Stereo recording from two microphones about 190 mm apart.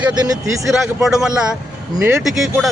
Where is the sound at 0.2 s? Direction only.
15° right (ahead or behind).